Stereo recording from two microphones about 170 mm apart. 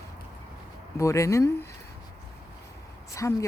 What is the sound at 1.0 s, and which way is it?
Speech, 15° left (ahead or behind).